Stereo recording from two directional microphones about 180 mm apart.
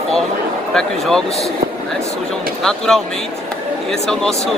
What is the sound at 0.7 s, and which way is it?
Speech, 5° left (ahead or behind).